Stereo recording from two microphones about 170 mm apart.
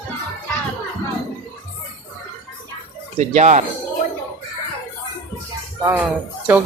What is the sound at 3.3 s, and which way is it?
Speech, 45° right (ahead or behind).